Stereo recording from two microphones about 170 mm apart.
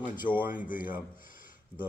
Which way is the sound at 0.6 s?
55° left (ahead or behind).